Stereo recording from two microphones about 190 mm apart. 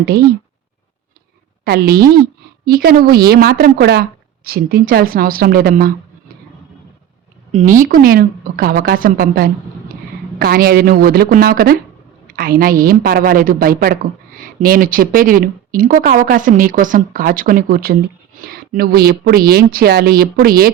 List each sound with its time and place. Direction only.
1.6 s a woman's voice: 55° right (ahead or behind)
7.5 s a woman's voice: 40° right (ahead or behind)